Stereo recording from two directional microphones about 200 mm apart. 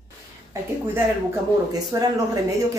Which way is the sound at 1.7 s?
20° right (ahead or behind).